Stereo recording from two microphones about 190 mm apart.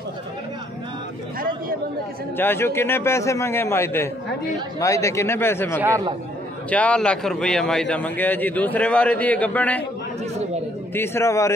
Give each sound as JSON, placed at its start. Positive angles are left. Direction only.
{"t": 2.3, "sound": "a man's voice", "side_deg": 10}
{"t": 5.8, "sound": "speech", "side_deg": -15}
{"t": 6.7, "sound": "a man's voice", "side_deg": 5}
{"t": 11.0, "sound": "a man's voice", "side_deg": 15}